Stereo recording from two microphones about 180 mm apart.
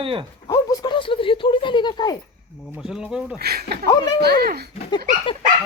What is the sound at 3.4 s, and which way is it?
Speech, 60° right (ahead or behind).